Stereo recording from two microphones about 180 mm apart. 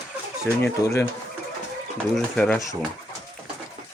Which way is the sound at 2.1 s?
Centre (ahead or behind).